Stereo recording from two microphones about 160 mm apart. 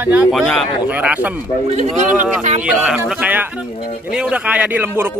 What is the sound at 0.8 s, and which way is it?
Speech, 10° right (ahead or behind).